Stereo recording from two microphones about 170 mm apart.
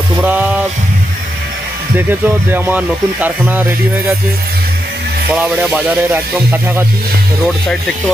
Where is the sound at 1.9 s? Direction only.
10° right (ahead or behind).